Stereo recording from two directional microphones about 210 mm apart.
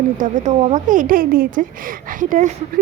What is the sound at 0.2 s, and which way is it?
A woman's voice, 35° right (ahead or behind).